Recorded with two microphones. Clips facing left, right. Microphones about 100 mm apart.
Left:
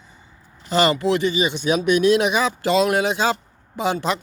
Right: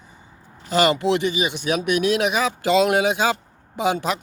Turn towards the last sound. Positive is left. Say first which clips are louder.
# right 1 dB
turn(degrees=-15)  # may be behind; listen again after turning